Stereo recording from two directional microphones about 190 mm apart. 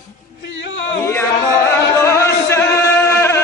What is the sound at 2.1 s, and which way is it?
Chant, 15° left (ahead or behind).